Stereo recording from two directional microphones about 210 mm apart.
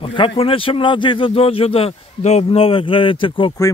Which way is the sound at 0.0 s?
25° left (ahead or behind).